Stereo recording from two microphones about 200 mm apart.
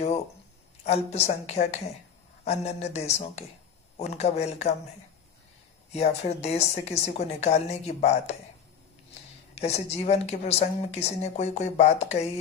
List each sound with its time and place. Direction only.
0.8 s a man's voice: 35° left (ahead or behind)
5.9 s speech: 35° left (ahead or behind)
9.6 s speech: 35° left (ahead or behind)